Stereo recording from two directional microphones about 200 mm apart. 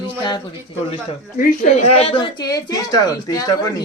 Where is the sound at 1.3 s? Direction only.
45° left (ahead or behind).